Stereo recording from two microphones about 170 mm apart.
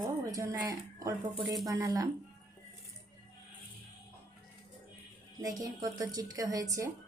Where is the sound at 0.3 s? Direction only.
20° right (ahead or behind).